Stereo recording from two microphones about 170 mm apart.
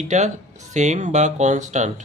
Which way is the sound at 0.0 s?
45° right (ahead or behind).